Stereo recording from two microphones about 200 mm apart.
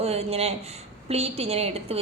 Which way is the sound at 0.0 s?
30° right (ahead or behind).